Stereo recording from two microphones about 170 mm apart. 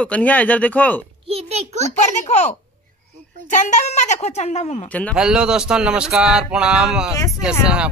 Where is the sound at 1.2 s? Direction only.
35° right (ahead or behind).